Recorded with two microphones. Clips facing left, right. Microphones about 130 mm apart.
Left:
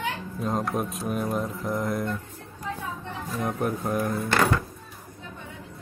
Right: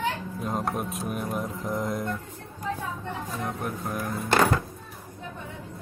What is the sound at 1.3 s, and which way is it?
Mantra, 20° right (ahead or behind).